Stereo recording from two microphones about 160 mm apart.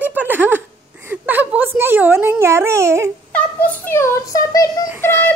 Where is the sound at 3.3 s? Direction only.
10° left (ahead or behind).